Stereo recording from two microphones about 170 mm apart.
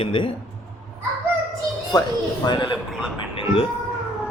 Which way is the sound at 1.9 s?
20° left (ahead or behind).